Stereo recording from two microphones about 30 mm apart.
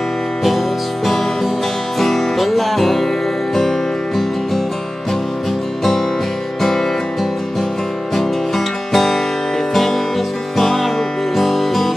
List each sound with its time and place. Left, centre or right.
1.0 s music: centre
6.6 s music: centre
8.1 s music: centre
10.6 s music: centre